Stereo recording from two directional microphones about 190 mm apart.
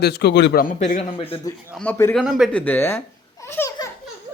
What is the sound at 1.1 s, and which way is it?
Speech, 30° left (ahead or behind).